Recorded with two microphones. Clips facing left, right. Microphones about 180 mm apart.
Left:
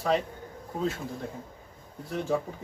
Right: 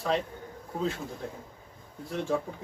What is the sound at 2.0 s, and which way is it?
Speech, centre (ahead or behind).